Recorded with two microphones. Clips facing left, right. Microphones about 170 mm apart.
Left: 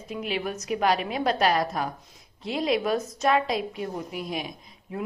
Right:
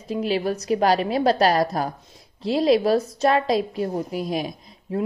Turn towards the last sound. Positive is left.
turn(degrees=-40)  # may be behind; listen again after turning